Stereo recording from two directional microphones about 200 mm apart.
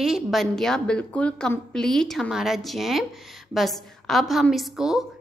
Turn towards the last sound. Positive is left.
turn(degrees=0)  # may be behind; listen again after turning